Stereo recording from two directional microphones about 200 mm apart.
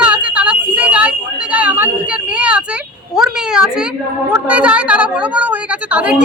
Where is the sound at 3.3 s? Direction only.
5° right (ahead or behind).